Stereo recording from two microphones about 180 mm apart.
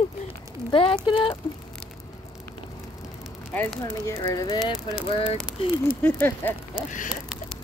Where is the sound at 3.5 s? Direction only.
10° left (ahead or behind).